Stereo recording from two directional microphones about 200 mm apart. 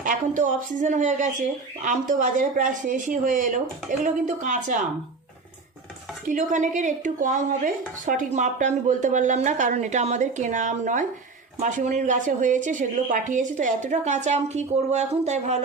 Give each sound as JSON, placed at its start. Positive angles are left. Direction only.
{"t": 0.0, "sound": "a woman's voice", "side_deg": -40}
{"t": 6.2, "sound": "a woman's voice", "side_deg": -40}